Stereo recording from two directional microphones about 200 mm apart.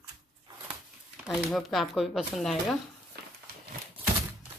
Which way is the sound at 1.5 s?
Centre (ahead or behind).